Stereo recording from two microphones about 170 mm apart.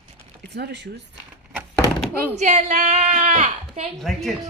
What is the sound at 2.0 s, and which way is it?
Speech, 10° left (ahead or behind).